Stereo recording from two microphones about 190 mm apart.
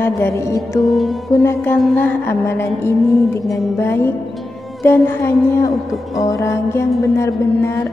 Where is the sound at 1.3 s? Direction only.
15° left (ahead or behind).